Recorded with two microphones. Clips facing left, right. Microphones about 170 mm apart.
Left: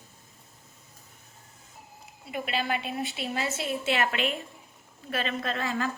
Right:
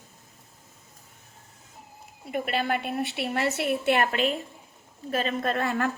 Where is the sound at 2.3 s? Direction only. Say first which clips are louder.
Right 3 dB; 50° right (ahead or behind).